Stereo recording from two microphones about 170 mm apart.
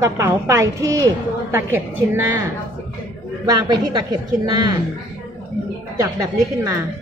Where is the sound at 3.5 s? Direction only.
25° right (ahead or behind).